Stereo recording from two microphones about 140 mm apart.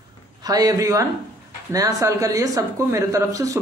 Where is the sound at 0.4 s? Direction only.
25° right (ahead or behind).